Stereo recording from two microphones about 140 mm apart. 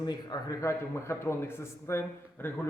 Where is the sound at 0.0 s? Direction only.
30° left (ahead or behind).